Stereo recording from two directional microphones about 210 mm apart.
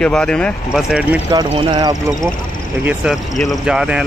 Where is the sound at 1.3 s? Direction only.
20° right (ahead or behind).